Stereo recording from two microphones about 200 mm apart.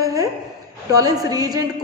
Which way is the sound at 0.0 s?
15° right (ahead or behind).